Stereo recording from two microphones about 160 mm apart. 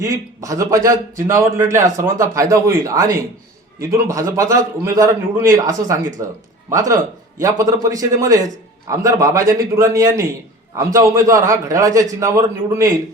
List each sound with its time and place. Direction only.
0.0 s a man's voice: 20° right (ahead or behind)